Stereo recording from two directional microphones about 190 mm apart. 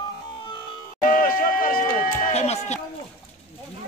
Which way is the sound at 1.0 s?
45° left (ahead or behind).